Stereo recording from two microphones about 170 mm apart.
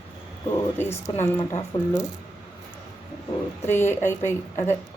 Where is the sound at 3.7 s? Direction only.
15° left (ahead or behind).